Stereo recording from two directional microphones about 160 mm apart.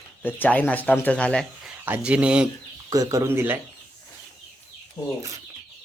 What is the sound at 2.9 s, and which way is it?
Speech, 20° right (ahead or behind).